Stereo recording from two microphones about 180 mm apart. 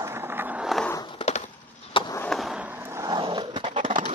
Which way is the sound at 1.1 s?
40° left (ahead or behind).